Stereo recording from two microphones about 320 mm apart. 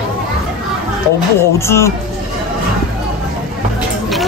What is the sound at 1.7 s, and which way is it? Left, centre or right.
Speech, centre.